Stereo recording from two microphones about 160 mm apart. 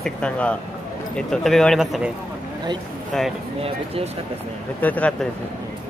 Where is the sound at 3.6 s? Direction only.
40° right (ahead or behind).